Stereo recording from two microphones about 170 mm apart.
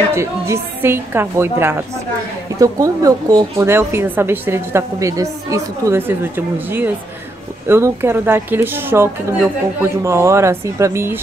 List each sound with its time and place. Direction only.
0.1 s a woman's voice: 15° right (ahead or behind)